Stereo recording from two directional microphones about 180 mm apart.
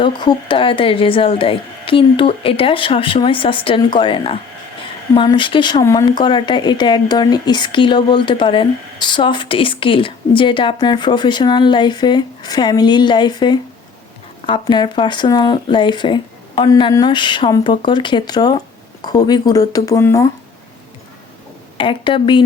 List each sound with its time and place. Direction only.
0.0 s speech: 25° left (ahead or behind)
21.8 s speech: 30° left (ahead or behind)